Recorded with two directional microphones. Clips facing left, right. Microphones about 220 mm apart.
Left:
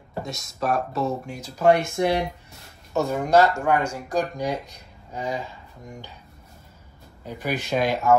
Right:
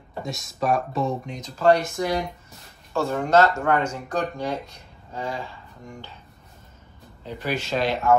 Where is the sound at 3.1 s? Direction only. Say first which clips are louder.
Even; 10° left (ahead or behind).